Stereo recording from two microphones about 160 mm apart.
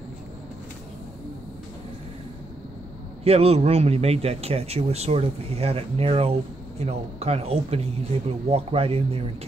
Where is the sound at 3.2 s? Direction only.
40° right (ahead or behind).